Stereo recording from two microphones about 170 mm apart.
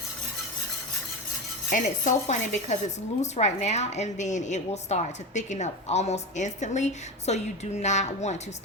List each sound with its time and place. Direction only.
1.7 s a woman's voice: 45° left (ahead or behind)